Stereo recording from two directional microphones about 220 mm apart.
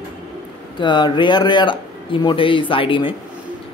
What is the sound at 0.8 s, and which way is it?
Speech, 20° left (ahead or behind).